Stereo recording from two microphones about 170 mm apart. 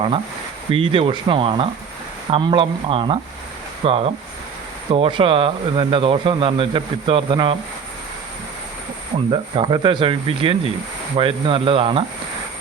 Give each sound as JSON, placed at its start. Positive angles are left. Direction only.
{"t": 0.7, "sound": "speech", "side_deg": -30}
{"t": 9.1, "sound": "speech", "side_deg": -30}